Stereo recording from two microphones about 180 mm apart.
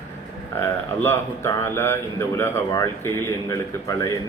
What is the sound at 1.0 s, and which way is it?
A man's voice, 15° left (ahead or behind).